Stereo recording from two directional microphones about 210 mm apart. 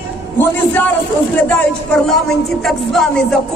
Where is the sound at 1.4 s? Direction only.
5° left (ahead or behind).